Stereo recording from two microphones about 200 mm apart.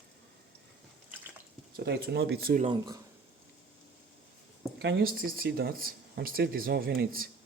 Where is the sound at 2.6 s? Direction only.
25° right (ahead or behind).